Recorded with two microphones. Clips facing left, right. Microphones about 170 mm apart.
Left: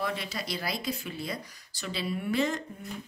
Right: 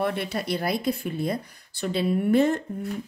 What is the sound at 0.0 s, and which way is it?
Speech, 60° right (ahead or behind).